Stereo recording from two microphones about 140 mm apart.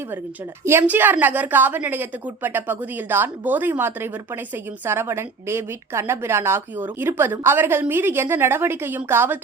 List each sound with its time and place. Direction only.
0.6 s a woman's voice: 20° right (ahead or behind)